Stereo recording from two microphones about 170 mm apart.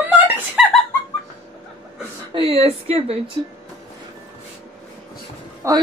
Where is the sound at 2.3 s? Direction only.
35° right (ahead or behind).